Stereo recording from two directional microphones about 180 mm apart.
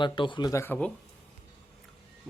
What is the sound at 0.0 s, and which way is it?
Speech, 25° left (ahead or behind).